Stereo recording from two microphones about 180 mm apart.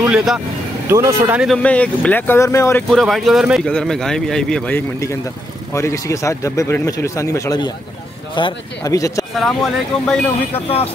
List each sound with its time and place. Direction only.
0.1 s speech: centre (ahead or behind)
0.8 s speech: 15° right (ahead or behind)
1.6 s speech: 5° left (ahead or behind)
2.9 s speech: centre (ahead or behind); by 9.2 s 20° left (ahead or behind)
9.4 s speech: centre (ahead or behind)